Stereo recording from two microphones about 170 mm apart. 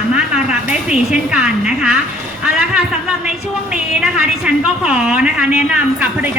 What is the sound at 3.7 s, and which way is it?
A woman's voice, 5° right (ahead or behind).